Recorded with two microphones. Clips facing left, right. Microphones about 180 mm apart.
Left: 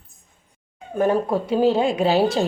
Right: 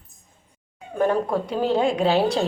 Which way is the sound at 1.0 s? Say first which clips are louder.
Left 2 dB; 5° left (ahead or behind).